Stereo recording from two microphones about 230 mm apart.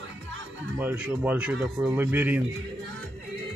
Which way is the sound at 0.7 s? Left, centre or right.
Centre.